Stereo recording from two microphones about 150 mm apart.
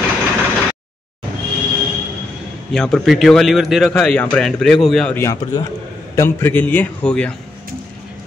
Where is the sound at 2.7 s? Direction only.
Centre (ahead or behind).